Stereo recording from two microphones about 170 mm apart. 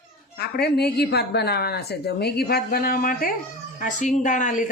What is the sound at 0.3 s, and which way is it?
Speech, 70° left (ahead or behind).